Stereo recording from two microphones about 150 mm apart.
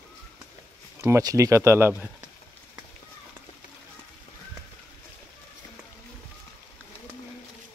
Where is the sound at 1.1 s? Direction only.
20° right (ahead or behind).